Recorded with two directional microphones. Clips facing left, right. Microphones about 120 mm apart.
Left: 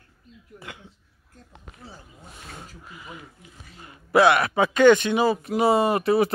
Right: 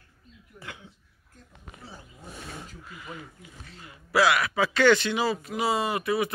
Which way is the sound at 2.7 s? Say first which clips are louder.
Even; 15° left (ahead or behind).